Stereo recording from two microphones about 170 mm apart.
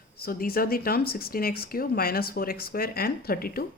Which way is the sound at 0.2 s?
60° left (ahead or behind).